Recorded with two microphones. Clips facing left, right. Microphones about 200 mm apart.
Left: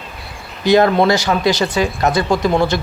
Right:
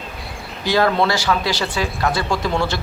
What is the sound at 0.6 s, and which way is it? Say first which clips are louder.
Speech: left 5 dB; 20° left (ahead or behind).